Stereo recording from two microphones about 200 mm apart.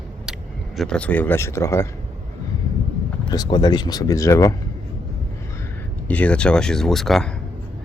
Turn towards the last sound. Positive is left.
turn(degrees=0)  # may be behind; listen again after turning